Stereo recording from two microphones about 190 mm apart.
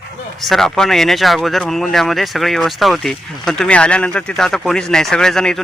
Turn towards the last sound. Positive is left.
turn(degrees=5)  # may be behind; listen again after turning